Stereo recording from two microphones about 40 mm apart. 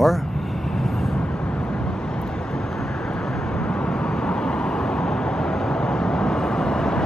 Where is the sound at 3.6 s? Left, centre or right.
Left.